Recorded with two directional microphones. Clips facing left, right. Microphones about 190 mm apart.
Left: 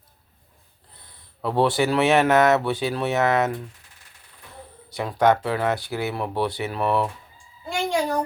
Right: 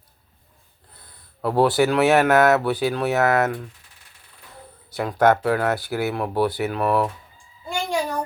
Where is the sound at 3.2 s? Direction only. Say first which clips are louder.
Right 1 dB; 20° left (ahead or behind).